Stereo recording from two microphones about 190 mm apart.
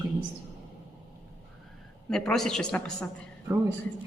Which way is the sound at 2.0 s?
5° left (ahead or behind).